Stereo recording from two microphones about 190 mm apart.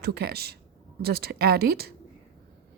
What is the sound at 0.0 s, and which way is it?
Speech, 55° right (ahead or behind).